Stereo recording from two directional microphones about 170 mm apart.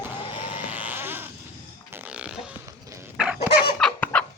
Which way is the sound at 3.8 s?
5° left (ahead or behind).